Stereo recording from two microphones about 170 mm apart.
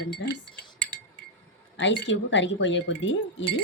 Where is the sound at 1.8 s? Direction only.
90° left.